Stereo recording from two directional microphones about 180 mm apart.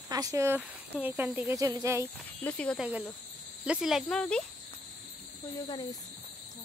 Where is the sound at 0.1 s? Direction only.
20° right (ahead or behind).